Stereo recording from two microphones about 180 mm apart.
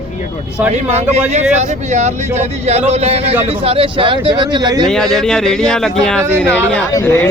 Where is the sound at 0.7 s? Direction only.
35° right (ahead or behind).